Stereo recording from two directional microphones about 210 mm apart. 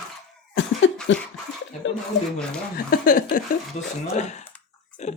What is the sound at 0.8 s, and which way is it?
Cough, 65° left (ahead or behind).